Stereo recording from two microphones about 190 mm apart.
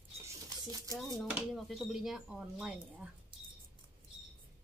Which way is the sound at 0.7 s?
20° right (ahead or behind).